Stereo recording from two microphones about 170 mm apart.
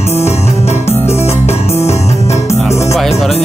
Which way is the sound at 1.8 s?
15° left (ahead or behind).